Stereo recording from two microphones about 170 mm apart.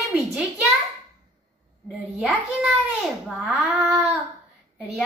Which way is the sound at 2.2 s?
Centre (ahead or behind).